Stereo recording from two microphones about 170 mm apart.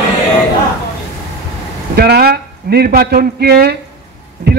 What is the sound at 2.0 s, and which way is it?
A man's voice, 65° right (ahead or behind).